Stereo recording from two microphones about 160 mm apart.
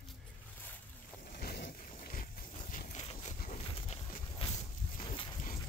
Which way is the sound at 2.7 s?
50° left (ahead or behind).